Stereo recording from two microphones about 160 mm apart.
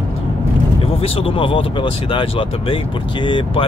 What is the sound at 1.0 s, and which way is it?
Speech, 35° left (ahead or behind).